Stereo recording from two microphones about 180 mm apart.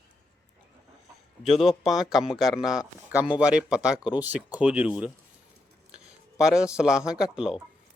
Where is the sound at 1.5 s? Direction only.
Centre (ahead or behind).